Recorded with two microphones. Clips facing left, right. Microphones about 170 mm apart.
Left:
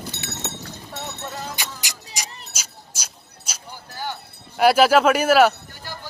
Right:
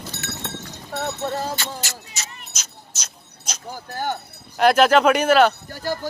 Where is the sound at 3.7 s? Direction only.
50° right (ahead or behind).